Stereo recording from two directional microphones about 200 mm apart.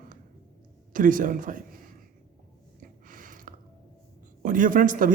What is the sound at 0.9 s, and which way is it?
Speech, 40° right (ahead or behind).